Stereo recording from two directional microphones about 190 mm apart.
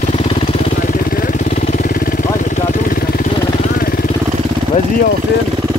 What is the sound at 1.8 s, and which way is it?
Vehicle, 50° left (ahead or behind).